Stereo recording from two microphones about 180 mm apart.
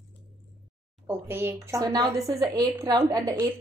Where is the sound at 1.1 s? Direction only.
15° right (ahead or behind).